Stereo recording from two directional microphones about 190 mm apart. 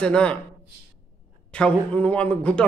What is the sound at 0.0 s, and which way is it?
Speech, 5° left (ahead or behind).